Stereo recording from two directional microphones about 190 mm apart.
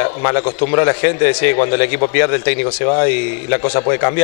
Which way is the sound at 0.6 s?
20° left (ahead or behind).